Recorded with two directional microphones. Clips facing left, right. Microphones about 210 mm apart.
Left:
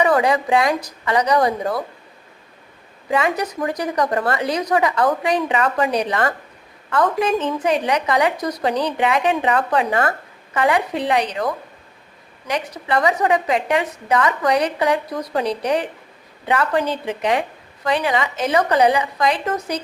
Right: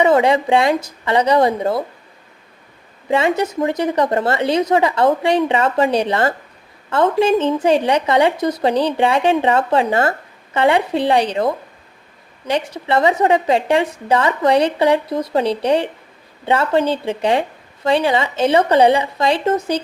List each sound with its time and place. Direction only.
0.0 s a woman's voice: 25° right (ahead or behind)
3.1 s a woman's voice: 25° right (ahead or behind)